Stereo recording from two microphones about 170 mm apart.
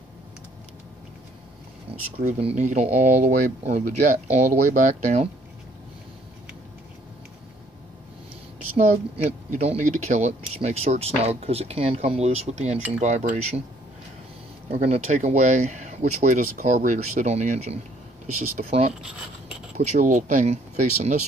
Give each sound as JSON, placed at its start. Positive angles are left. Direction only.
{"t": 1.9, "sound": "a sound", "side_deg": -35}
{"t": 2.4, "sound": "speech", "side_deg": -45}
{"t": 8.7, "sound": "speech", "side_deg": -40}
{"t": 14.7, "sound": "speech", "side_deg": -40}
{"t": 19.0, "sound": "a sound", "side_deg": -5}
{"t": 19.8, "sound": "speech", "side_deg": -45}